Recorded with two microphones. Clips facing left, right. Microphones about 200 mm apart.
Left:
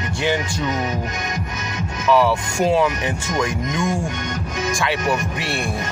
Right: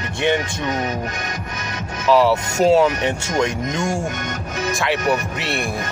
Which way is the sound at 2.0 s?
25° right (ahead or behind).